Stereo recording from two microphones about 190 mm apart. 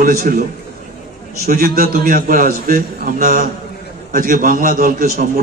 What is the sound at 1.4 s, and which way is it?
A man's voice, 50° right (ahead or behind).